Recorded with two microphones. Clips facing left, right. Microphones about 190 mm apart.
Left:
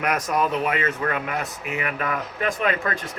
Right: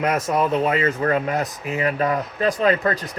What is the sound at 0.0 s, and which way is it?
Speech, 25° right (ahead or behind).